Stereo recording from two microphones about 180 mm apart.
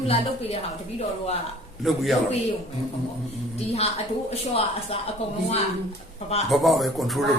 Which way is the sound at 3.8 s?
35° left (ahead or behind).